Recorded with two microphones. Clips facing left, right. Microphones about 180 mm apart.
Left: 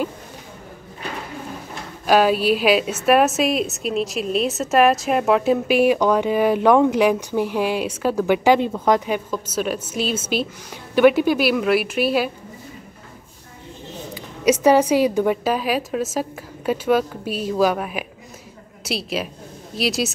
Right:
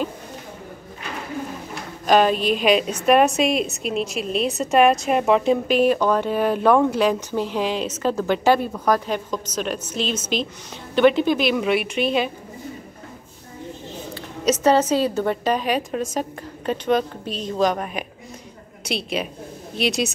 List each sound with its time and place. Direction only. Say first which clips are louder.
2.0 s a woman's voice: left 1 dB; 5° left (ahead or behind)
8.5 s speech: left 2 dB; 20° left (ahead or behind)
9.0 s a woman's voice: left 2 dB; 10° left (ahead or behind)
14.1 s a woman's voice: left 3 dB; 10° left (ahead or behind)